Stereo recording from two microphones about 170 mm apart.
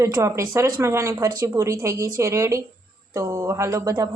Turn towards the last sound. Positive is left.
turn(degrees=-20)  # may be behind; listen again after turning